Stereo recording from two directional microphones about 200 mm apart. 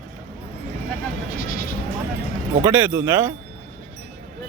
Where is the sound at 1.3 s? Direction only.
45° left (ahead or behind).